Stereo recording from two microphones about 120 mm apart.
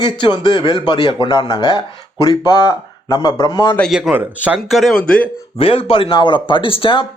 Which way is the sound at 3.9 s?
10° right (ahead or behind).